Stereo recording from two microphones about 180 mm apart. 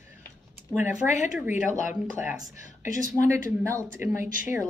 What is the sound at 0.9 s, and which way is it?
Speech, 40° left (ahead or behind).